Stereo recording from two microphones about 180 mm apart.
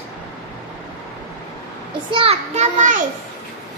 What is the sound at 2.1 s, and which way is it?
Speech, 30° right (ahead or behind).